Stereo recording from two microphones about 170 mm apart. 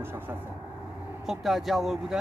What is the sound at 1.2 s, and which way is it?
Speech, centre (ahead or behind).